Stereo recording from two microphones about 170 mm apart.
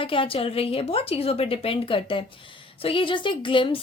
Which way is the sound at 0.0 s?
30° left (ahead or behind).